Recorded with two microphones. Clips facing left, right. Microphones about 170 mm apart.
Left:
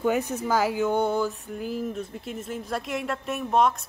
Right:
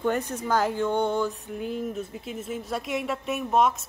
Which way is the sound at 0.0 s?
5° left (ahead or behind).